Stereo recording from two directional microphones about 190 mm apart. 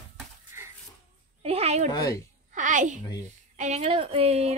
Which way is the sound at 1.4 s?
30° right (ahead or behind).